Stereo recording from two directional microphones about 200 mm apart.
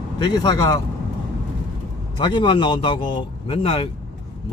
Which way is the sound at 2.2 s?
20° left (ahead or behind).